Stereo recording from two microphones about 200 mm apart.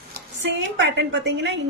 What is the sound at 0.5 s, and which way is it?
A woman's voice, 60° right (ahead or behind).